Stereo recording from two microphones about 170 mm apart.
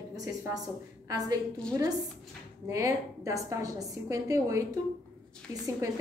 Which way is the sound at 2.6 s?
20° right (ahead or behind).